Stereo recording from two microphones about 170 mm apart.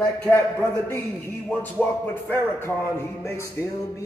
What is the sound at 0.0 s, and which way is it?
A man's voice, 10° left (ahead or behind).